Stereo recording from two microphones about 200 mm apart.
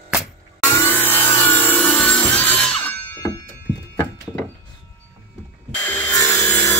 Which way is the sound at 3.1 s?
20° left (ahead or behind).